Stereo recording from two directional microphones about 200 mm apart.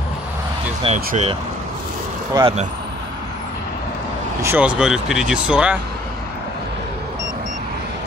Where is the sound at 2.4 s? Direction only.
20° right (ahead or behind).